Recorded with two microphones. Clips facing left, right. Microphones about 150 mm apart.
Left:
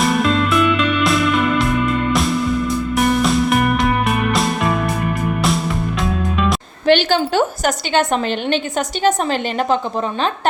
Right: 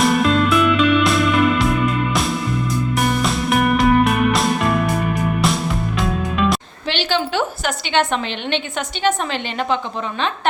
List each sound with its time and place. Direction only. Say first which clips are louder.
0.0 s music: right 1 dB; centre (ahead or behind)
2.9 s music: left 5 dB; centre (ahead or behind)
6.0 s music: right 1 dB; centre (ahead or behind)
6.8 s a sound: left 8 dB; 50° left (ahead or behind)
9.0 s a woman's voice: left 3 dB; 40° left (ahead or behind)